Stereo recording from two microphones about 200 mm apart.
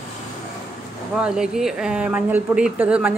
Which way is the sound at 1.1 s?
5° right (ahead or behind).